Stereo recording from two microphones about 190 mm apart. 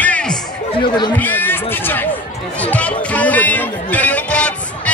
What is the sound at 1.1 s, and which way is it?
Speech, 10° left (ahead or behind).